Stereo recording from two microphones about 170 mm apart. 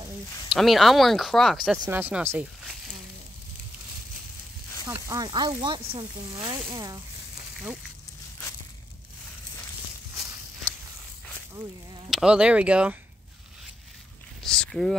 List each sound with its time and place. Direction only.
0.5 s speech: centre (ahead or behind)
1.9 s speech: 10° right (ahead or behind)
4.8 s speech: 15° right (ahead or behind)
12.1 s speech: 5° right (ahead or behind)
14.4 s speech: 5° left (ahead or behind)